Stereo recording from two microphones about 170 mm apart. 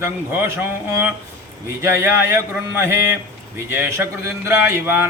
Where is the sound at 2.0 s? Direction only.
15° right (ahead or behind).